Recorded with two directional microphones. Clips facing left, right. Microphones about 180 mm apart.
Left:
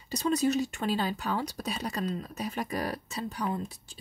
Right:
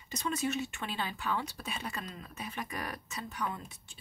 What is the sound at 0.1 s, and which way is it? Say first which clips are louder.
Speech: left 7 dB; 35° left (ahead or behind).